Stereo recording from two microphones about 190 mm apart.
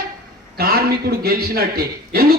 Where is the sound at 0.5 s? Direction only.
55° right (ahead or behind).